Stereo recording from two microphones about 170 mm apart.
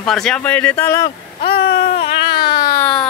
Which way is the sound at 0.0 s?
5° left (ahead or behind).